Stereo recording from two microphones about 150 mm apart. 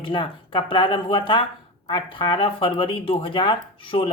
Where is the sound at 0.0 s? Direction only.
35° left (ahead or behind).